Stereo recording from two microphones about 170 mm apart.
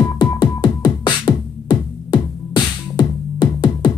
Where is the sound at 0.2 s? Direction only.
25° left (ahead or behind).